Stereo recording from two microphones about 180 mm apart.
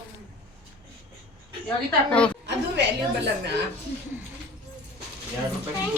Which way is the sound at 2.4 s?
70° right (ahead or behind).